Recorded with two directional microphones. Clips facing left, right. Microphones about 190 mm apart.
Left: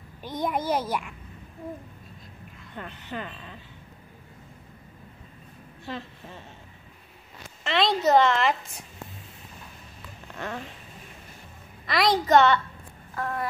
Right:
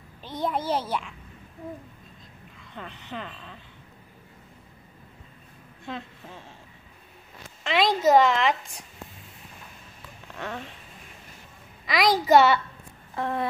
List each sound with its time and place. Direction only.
0.2 s a child's voice: 15° left (ahead or behind)
2.7 s a woman's voice: 5° left (ahead or behind)
7.6 s a woman's voice: centre (ahead or behind)
10.2 s a sound: centre (ahead or behind)
11.8 s a woman's voice: centre (ahead or behind)
13.1 s a sound: 20° right (ahead or behind)